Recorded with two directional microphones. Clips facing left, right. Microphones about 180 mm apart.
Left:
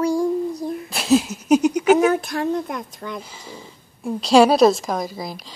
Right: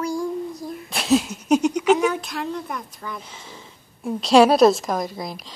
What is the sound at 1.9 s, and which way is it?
Speech, 45° left (ahead or behind).